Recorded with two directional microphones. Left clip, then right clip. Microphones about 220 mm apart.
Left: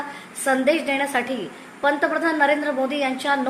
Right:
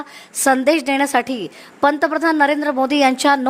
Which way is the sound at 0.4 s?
55° right (ahead or behind).